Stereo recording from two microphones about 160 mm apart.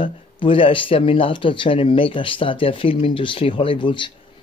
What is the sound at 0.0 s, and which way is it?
Speech, 35° left (ahead or behind).